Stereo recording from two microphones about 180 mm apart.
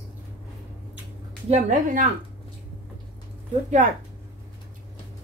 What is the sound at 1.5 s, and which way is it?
Speech, 45° right (ahead or behind).